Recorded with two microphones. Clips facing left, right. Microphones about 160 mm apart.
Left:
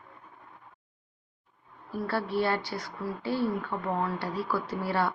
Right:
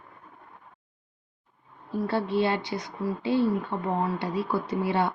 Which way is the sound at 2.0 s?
20° right (ahead or behind).